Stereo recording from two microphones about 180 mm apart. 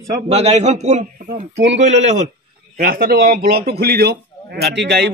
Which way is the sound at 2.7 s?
55° right (ahead or behind).